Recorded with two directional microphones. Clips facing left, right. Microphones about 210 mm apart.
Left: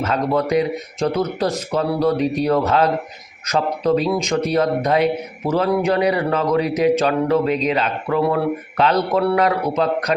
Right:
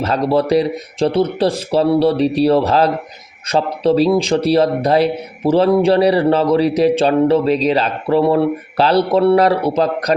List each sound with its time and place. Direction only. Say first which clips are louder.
0.0 s a man's voice: right 4 dB; 35° right (ahead or behind)